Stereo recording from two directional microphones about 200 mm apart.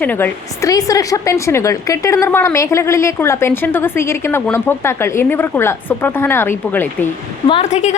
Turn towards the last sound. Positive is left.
turn(degrees=35)  # may be behind; listen again after turning